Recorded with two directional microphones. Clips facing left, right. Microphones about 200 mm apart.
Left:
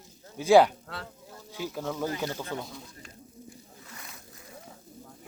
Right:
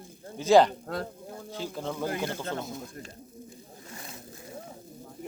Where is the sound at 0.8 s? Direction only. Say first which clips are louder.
Right 8 dB; 45° right (ahead or behind).